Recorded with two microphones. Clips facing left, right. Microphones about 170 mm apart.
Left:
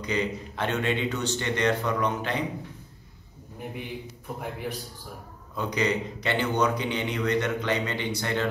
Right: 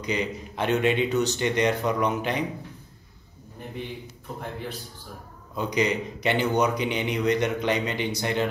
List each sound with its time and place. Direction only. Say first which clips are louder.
0.0 s a man's voice: even; 15° right (ahead or behind)
4.4 s a man's voice: left 1 dB; 10° left (ahead or behind)
5.6 s a man's voice: right 2 dB; 15° right (ahead or behind)